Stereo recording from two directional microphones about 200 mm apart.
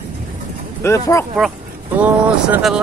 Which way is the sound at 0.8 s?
15° left (ahead or behind).